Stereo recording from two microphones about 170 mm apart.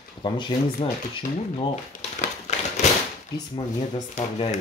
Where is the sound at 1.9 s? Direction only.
45° left (ahead or behind).